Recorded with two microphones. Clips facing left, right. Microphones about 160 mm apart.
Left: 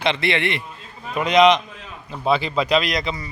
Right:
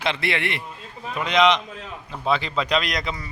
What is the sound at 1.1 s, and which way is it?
A man's voice, 15° left (ahead or behind).